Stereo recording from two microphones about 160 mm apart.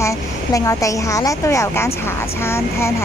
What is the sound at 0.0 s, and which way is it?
A woman's voice, 20° left (ahead or behind).